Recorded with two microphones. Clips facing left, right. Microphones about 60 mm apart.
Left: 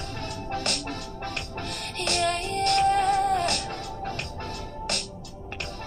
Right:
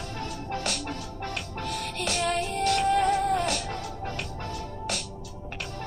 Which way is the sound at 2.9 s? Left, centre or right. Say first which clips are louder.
Left 1 dB; left.